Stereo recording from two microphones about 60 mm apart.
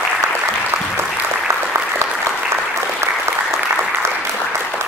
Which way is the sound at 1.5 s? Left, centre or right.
Right.